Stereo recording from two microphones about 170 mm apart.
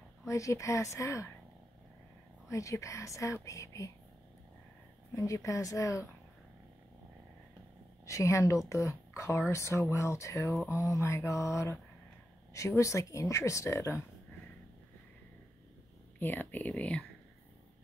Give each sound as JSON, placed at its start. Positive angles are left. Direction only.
{"t": 0.3, "sound": "speech", "side_deg": 20}
{"t": 2.5, "sound": "speech", "side_deg": 20}
{"t": 5.1, "sound": "speech", "side_deg": 20}
{"t": 8.1, "sound": "speech", "side_deg": 20}
{"t": 16.2, "sound": "speech", "side_deg": 10}